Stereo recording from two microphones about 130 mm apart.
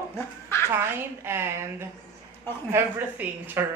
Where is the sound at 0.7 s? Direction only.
20° right (ahead or behind).